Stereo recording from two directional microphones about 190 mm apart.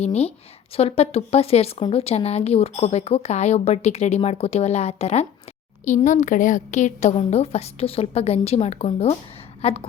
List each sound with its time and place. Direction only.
0.0 s a woman's voice: 35° left (ahead or behind)